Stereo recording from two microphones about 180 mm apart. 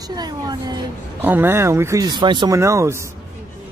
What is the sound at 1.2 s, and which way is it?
Speech, 10° right (ahead or behind).